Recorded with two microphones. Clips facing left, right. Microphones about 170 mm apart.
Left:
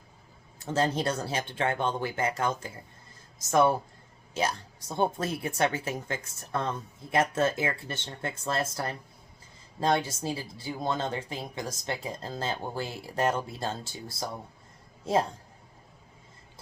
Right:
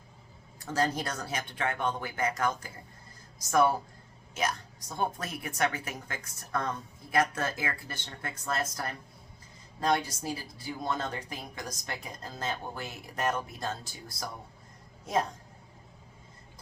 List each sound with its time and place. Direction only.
0.6 s a woman's voice: 25° left (ahead or behind)